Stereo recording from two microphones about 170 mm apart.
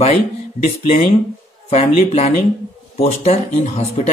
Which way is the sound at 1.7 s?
40° left (ahead or behind).